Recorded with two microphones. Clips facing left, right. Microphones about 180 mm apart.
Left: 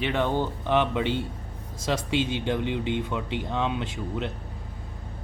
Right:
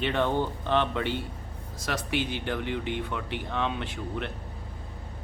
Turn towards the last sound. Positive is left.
turn(degrees=15)  # may be behind; listen again after turning